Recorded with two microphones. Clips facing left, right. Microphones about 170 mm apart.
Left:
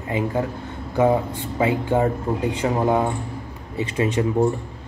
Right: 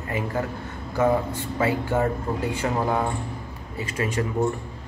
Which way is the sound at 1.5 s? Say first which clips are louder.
Left 3 dB; 15° left (ahead or behind).